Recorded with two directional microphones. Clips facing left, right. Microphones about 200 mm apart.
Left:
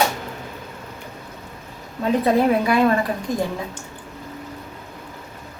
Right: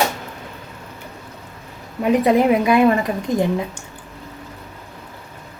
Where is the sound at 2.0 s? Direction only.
20° right (ahead or behind).